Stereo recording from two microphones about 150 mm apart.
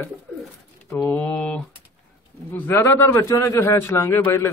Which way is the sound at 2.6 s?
15° left (ahead or behind).